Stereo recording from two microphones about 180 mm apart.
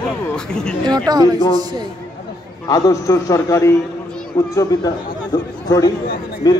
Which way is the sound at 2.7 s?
20° left (ahead or behind).